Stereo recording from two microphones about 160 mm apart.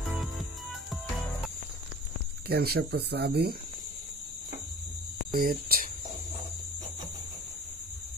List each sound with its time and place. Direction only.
0.2 s music: centre (ahead or behind)
2.4 s speech: 80° right
5.3 s speech: 60° right (ahead or behind)